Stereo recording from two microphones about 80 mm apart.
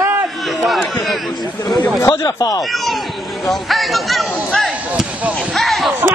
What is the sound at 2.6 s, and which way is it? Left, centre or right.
Speech, centre.